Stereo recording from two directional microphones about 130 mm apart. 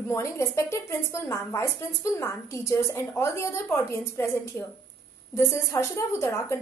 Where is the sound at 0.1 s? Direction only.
20° left (ahead or behind).